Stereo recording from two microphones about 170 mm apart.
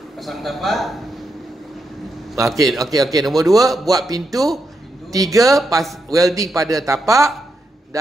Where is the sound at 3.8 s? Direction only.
20° right (ahead or behind).